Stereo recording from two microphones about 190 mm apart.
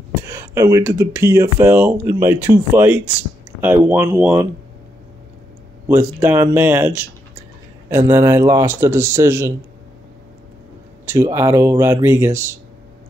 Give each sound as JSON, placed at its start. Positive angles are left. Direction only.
{"t": 0.3, "sound": "speech", "side_deg": -15}
{"t": 5.9, "sound": "speech", "side_deg": -10}
{"t": 11.1, "sound": "speech", "side_deg": -15}